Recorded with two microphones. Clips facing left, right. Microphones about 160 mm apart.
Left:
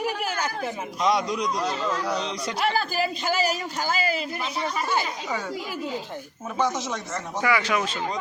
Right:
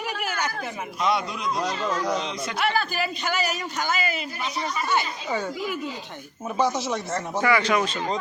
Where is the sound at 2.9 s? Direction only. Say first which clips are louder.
Left 2 dB; 35° left (ahead or behind).